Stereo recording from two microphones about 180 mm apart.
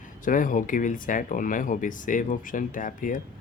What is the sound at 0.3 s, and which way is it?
Speech, 45° left (ahead or behind).